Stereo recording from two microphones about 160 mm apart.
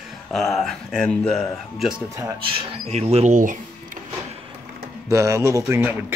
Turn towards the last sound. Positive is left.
turn(degrees=-15)  # may be behind; listen again after turning